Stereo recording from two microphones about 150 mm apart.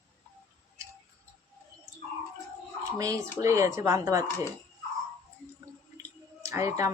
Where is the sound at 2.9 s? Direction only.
20° right (ahead or behind).